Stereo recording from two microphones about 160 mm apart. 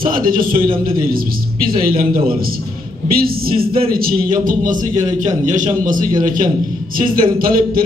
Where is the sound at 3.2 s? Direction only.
70° right (ahead or behind).